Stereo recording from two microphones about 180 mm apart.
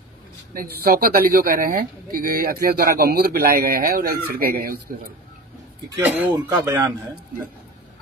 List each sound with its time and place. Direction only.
0.6 s speech: 55° right (ahead or behind)
5.9 s speech: 10° right (ahead or behind)